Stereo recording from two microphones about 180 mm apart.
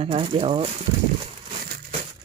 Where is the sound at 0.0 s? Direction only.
30° right (ahead or behind).